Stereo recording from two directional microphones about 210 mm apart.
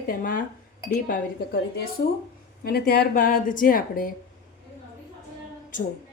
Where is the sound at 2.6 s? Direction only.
50° left (ahead or behind).